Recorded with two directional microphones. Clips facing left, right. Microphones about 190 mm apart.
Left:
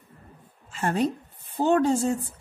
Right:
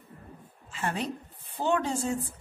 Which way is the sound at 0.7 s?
45° left (ahead or behind).